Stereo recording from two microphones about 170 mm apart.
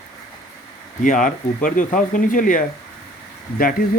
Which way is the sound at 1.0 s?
50° left (ahead or behind).